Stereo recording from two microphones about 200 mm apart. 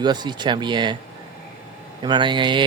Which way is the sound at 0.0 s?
20° right (ahead or behind).